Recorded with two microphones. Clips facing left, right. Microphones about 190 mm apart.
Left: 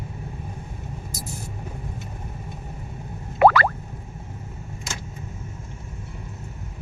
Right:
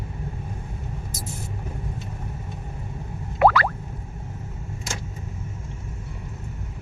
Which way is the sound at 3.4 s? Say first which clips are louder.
Left 2 dB; centre (ahead or behind).